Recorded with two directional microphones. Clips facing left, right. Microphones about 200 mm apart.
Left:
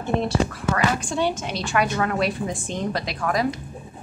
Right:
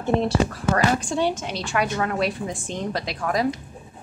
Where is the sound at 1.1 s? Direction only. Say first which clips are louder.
Even; 30° right (ahead or behind).